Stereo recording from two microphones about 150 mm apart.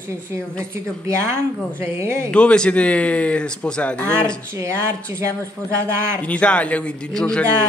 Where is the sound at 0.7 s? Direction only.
20° right (ahead or behind).